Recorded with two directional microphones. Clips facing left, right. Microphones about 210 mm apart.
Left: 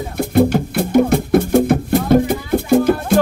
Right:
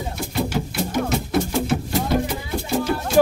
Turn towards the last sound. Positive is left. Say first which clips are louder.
# left 9 dB
turn(degrees=55)  # may be behind; listen again after turning